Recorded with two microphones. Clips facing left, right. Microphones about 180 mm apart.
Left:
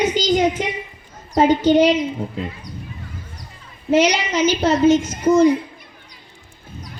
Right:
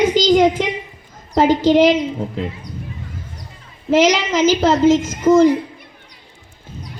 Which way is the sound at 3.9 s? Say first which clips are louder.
Right 2 dB; 90° right.